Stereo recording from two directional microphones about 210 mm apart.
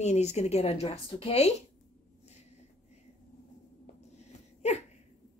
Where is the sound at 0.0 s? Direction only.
35° left (ahead or behind).